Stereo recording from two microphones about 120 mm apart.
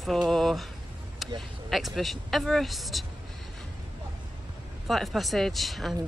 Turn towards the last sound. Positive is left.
turn(degrees=0)  # may be behind; listen again after turning